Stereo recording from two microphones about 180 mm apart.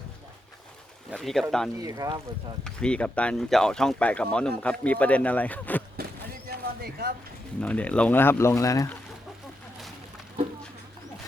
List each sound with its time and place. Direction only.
1.1 s speech: centre (ahead or behind)
1.8 s speech: 20° right (ahead or behind)
2.6 s speech: 5° left (ahead or behind)
6.5 s a sound: 60° right (ahead or behind)
7.6 s speech: 10° left (ahead or behind)